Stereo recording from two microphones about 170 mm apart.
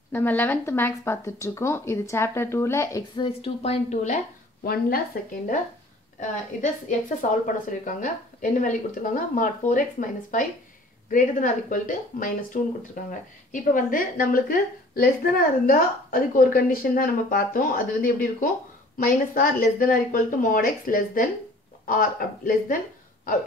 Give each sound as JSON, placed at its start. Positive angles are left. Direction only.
{"t": 0.1, "sound": "speech", "side_deg": 10}
{"t": 3.2, "sound": "a woman's voice", "side_deg": 30}
{"t": 4.6, "sound": "a woman's voice", "side_deg": 60}
{"t": 7.2, "sound": "a woman's voice", "side_deg": 50}